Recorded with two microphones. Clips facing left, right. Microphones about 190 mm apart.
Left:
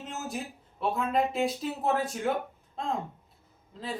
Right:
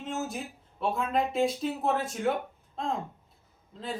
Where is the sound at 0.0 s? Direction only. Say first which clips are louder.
Right 2 dB; centre (ahead or behind).